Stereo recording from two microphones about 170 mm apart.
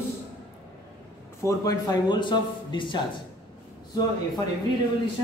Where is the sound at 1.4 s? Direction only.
20° left (ahead or behind).